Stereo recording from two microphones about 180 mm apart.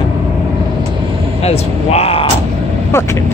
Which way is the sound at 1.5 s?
35° left (ahead or behind).